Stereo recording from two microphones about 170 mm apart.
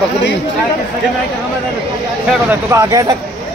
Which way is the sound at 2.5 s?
15° right (ahead or behind).